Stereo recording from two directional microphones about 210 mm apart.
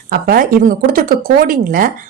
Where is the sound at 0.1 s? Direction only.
45° right (ahead or behind).